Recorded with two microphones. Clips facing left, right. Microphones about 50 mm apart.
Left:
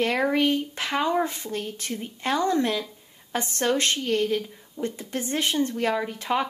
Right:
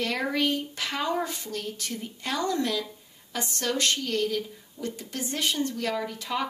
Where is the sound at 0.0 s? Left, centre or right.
Left.